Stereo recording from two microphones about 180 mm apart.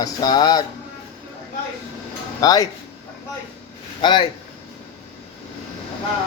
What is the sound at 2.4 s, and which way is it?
Speech, 20° left (ahead or behind).